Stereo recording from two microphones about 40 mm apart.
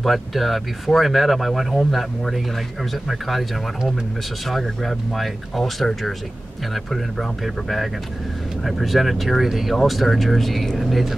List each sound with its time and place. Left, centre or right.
0.0 s speech: centre
4.5 s speech: centre